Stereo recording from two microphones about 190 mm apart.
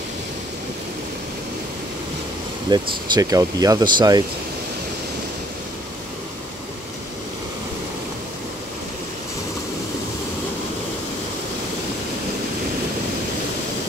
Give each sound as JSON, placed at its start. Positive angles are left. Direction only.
{"t": 2.7, "sound": "speech", "side_deg": -20}